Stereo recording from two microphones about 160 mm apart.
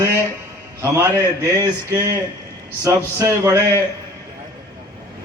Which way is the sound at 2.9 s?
15° right (ahead or behind).